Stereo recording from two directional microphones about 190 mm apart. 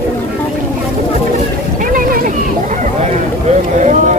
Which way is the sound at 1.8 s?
45° right (ahead or behind).